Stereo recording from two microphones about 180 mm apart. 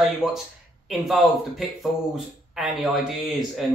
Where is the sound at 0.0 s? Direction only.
Centre (ahead or behind).